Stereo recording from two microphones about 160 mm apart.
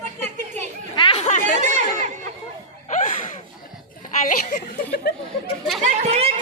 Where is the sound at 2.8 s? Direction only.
50° left (ahead or behind).